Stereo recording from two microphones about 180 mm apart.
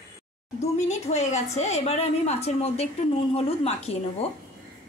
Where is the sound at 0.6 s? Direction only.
40° left (ahead or behind).